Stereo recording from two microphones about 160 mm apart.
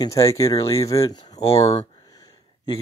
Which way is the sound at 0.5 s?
35° left (ahead or behind).